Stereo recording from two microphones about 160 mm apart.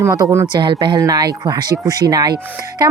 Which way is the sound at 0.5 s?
30° right (ahead or behind).